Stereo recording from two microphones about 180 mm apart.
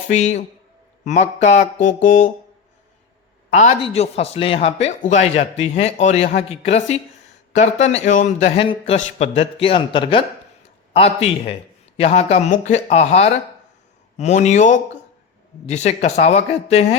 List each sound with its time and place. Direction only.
0.1 s speech: 40° left (ahead or behind)
3.5 s speech: 40° left (ahead or behind)